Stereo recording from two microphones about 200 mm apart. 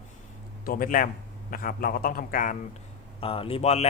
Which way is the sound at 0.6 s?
45° left (ahead or behind).